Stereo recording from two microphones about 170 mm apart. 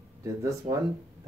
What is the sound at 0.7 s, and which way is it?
Speech, 40° right (ahead or behind).